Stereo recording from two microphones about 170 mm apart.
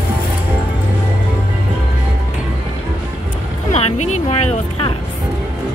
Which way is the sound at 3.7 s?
40° left (ahead or behind).